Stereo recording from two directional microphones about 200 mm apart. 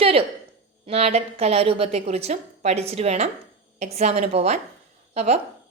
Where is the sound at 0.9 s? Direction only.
30° right (ahead or behind).